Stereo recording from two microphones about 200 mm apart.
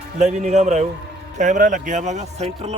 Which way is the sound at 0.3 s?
35° right (ahead or behind).